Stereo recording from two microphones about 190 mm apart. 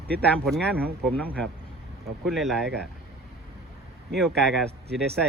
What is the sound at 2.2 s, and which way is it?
Speech, centre (ahead or behind).